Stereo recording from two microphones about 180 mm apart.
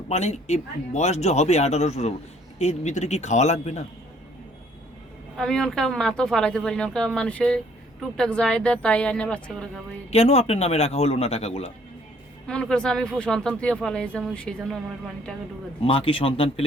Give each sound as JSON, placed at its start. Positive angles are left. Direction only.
{"t": 0.1, "sound": "speech", "side_deg": 40}
{"t": 5.4, "sound": "speech", "side_deg": 5}
{"t": 10.1, "sound": "speech", "side_deg": 35}
{"t": 12.5, "sound": "speech", "side_deg": 5}
{"t": 15.8, "sound": "speech", "side_deg": 30}